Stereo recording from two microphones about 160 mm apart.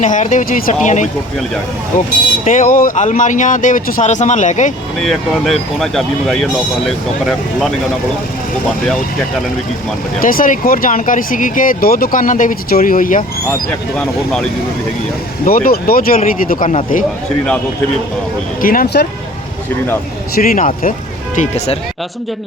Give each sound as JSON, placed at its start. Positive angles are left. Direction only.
{"t": 0.0, "sound": "speech", "side_deg": 50}
{"t": 2.4, "sound": "speech", "side_deg": 55}
{"t": 4.9, "sound": "speech", "side_deg": 0}
{"t": 10.2, "sound": "speech", "side_deg": 60}
{"t": 13.9, "sound": "speech", "side_deg": 5}
{"t": 15.4, "sound": "speech", "side_deg": 65}
{"t": 18.6, "sound": "speech", "side_deg": 60}
{"t": 20.3, "sound": "speech", "side_deg": 60}
{"t": 21.3, "sound": "speech", "side_deg": 45}